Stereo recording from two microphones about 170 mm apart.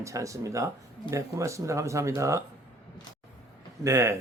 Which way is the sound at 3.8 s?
15° right (ahead or behind).